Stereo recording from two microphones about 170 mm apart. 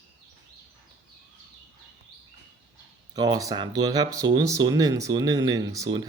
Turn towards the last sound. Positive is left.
turn(degrees=-25)  # may be behind; listen again after turning